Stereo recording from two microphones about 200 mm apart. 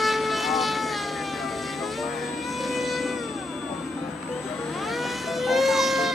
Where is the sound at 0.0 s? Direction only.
Centre (ahead or behind).